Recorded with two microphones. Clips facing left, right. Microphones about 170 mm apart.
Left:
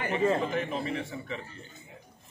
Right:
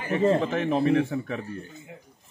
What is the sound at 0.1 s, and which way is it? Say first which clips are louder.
A man's voice: right 5 dB; 65° right (ahead or behind).